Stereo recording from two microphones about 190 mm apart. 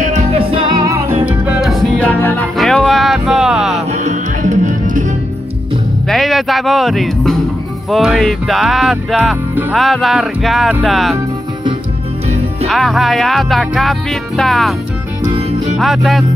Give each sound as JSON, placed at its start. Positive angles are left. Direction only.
{"t": 0.0, "sound": "music", "side_deg": -35}
{"t": 3.9, "sound": "music", "side_deg": -40}
{"t": 6.0, "sound": "music", "side_deg": 0}
{"t": 12.6, "sound": "music", "side_deg": 0}
{"t": 15.2, "sound": "music", "side_deg": -30}
{"t": 15.8, "sound": "music", "side_deg": 0}